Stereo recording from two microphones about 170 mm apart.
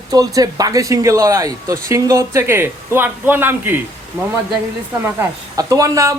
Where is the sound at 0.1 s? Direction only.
20° right (ahead or behind).